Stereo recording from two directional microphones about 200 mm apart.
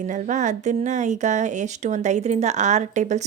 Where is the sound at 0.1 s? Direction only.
40° right (ahead or behind).